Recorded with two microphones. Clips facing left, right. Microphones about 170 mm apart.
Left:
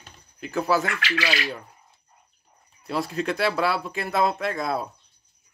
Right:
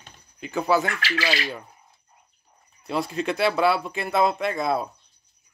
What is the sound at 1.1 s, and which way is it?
Speech, 30° right (ahead or behind).